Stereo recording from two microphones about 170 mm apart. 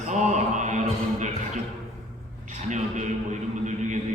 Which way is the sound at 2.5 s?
45° right (ahead or behind).